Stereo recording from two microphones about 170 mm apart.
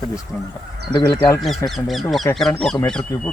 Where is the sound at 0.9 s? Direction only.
20° left (ahead or behind).